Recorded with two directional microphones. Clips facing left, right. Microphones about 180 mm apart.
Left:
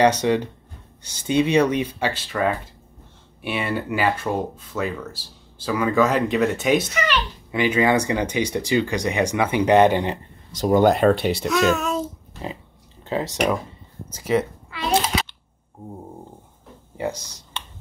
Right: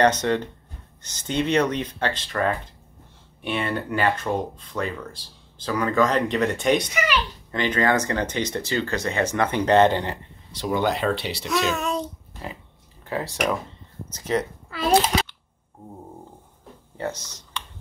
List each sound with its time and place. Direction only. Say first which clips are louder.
0.0 s speech: left 2 dB; 10° left (ahead or behind)
6.9 s a sound: left 1 dB; 10° right (ahead or behind)
7.5 s speech: left 3 dB; 10° left (ahead or behind)
10.5 s speech: left 7 dB; 45° left (ahead or behind)
11.4 s a child's voice: left 3 dB; centre (ahead or behind)
13.0 s speech: left 3 dB; 20° left (ahead or behind)
14.1 s speech: left 3 dB; 10° left (ahead or behind)
16.9 s speech: left 3 dB; 10° left (ahead or behind)